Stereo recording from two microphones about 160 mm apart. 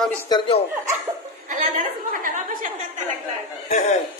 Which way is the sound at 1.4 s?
55° right (ahead or behind).